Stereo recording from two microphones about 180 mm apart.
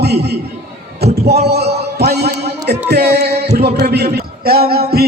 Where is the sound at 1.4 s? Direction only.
65° right (ahead or behind).